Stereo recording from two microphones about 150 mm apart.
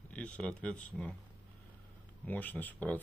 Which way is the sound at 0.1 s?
5° left (ahead or behind).